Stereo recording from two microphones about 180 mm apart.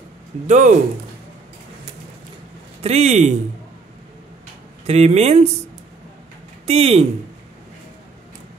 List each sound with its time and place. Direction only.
0.5 s speech: 45° right (ahead or behind)
2.8 s speech: 35° right (ahead or behind)
4.8 s speech: 35° right (ahead or behind)
6.7 s speech: 35° right (ahead or behind)